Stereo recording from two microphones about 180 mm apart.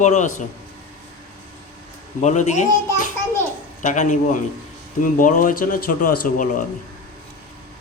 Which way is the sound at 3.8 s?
40° left (ahead or behind).